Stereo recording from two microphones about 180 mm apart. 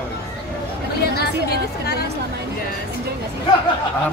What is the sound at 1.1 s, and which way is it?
Speech, 60° left (ahead or behind).